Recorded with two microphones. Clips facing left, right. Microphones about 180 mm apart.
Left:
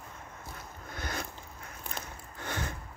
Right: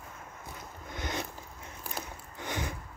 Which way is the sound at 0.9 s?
20° right (ahead or behind).